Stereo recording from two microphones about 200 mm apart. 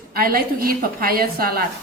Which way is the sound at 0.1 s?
50° right (ahead or behind).